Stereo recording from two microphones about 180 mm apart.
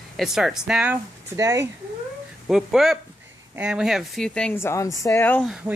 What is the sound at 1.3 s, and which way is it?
Speech, 20° right (ahead or behind).